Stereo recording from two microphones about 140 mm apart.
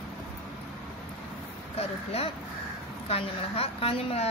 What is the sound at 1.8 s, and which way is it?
A woman's voice, 45° left (ahead or behind).